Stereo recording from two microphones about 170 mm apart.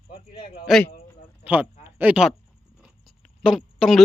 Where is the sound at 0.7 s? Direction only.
5° right (ahead or behind).